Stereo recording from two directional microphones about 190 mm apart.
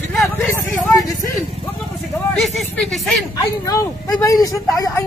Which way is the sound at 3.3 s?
20° left (ahead or behind).